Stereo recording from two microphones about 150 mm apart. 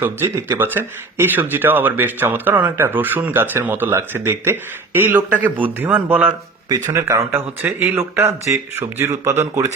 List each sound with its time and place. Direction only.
0.0 s speech: 15° right (ahead or behind)
6.7 s speech: 20° right (ahead or behind)